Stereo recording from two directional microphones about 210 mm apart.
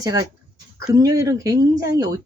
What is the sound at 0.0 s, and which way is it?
Speech, 15° right (ahead or behind).